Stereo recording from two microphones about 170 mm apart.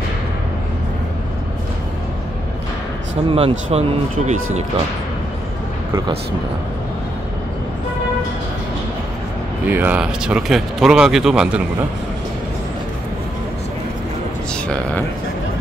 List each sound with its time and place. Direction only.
3.3 s speech: 35° right (ahead or behind)
9.7 s speech: 10° right (ahead or behind)